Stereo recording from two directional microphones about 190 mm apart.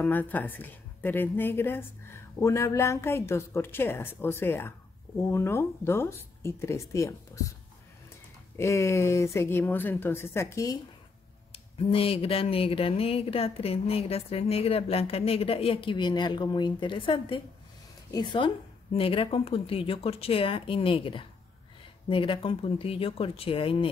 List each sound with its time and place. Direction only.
0.0 s speech: 10° left (ahead or behind)
8.5 s speech: 15° left (ahead or behind)
11.5 s speech: 30° left (ahead or behind)